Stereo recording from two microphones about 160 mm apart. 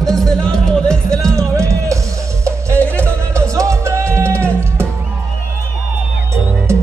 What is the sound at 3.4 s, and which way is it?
Music, 20° right (ahead or behind).